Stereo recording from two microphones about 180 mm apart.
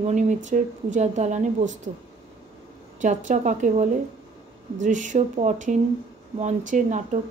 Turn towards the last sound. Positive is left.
turn(degrees=-40)  # may be behind; listen again after turning